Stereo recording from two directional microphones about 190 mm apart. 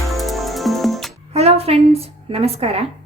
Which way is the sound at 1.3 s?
30° right (ahead or behind).